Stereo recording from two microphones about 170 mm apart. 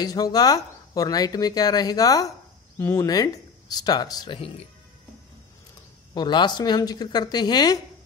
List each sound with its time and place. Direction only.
0.0 s speech: 25° left (ahead or behind)
6.1 s speech: 25° left (ahead or behind)